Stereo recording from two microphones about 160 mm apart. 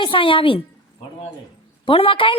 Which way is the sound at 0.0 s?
30° left (ahead or behind).